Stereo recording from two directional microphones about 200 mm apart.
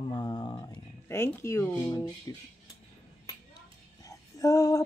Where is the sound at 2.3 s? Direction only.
15° left (ahead or behind).